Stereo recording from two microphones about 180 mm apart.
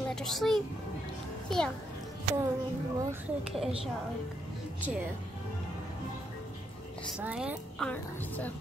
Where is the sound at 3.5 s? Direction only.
Centre (ahead or behind).